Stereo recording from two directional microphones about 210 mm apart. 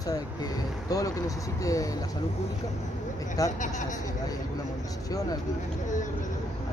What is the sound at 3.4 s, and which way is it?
Speech, 15° left (ahead or behind).